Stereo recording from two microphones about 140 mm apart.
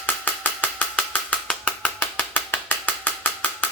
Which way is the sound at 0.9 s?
5° left (ahead or behind).